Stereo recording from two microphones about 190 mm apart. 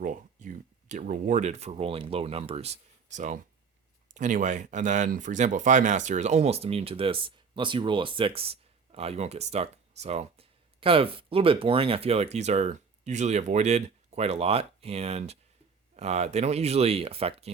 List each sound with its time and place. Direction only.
0.0 s speech: 45° right (ahead or behind)